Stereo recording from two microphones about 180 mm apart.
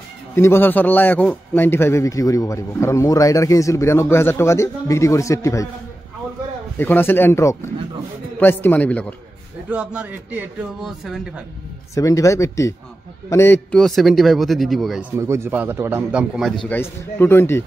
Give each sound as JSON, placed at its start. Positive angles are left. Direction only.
{"t": 0.4, "sound": "a man's voice", "side_deg": 10}
{"t": 6.8, "sound": "a man's voice", "side_deg": 10}
{"t": 9.7, "sound": "a man's voice", "side_deg": -10}
{"t": 11.9, "sound": "a man's voice", "side_deg": 20}
{"t": 15.1, "sound": "a man's voice", "side_deg": -15}
{"t": 16.6, "sound": "a man's voice", "side_deg": 10}